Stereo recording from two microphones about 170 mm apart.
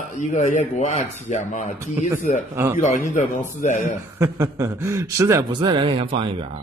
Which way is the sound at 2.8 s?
45° left (ahead or behind).